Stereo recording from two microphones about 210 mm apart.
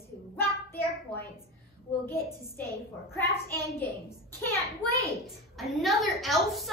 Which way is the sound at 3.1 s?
10° left (ahead or behind).